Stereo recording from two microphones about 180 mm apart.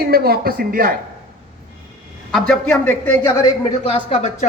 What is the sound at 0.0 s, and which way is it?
Speech, 60° right (ahead or behind).